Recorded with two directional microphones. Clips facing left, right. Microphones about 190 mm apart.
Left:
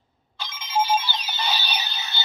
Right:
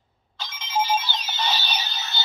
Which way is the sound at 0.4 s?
10° left (ahead or behind).